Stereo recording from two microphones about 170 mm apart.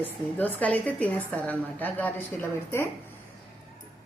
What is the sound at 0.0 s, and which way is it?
A woman's voice, 10° left (ahead or behind).